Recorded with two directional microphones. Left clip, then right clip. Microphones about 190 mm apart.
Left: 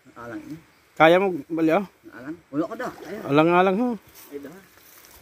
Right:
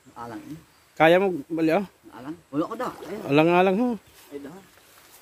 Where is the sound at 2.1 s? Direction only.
20° left (ahead or behind).